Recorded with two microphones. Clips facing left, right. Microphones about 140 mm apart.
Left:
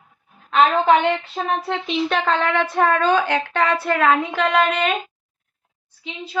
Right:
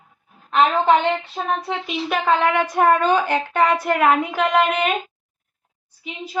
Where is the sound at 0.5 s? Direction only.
Centre (ahead or behind).